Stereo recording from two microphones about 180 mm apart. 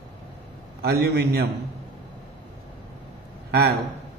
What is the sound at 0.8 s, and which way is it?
Speech, 65° right (ahead or behind).